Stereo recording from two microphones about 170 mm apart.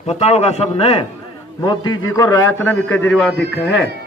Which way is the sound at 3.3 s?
90° left.